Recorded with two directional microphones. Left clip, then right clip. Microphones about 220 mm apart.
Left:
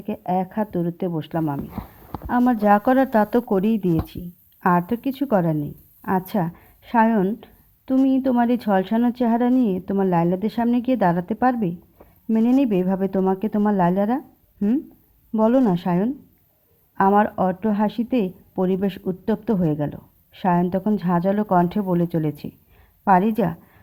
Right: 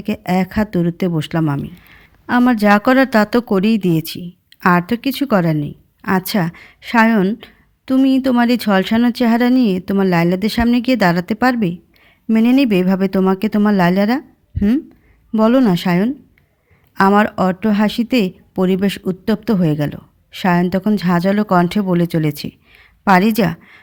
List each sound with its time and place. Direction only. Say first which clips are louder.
0.0 s speech: right 4 dB; 20° right (ahead or behind)